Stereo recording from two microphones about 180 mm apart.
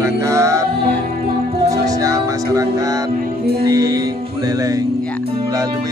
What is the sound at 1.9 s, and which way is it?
Speech, 20° right (ahead or behind).